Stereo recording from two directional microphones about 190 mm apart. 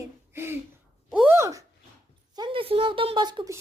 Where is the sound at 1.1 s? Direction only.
10° right (ahead or behind).